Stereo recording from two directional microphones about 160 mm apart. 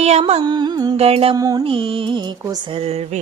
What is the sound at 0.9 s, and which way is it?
Music, 40° right (ahead or behind).